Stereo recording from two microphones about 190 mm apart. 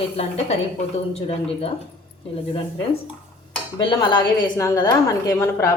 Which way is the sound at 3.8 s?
25° left (ahead or behind).